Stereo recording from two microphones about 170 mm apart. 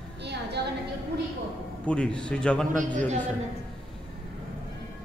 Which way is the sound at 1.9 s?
5° left (ahead or behind).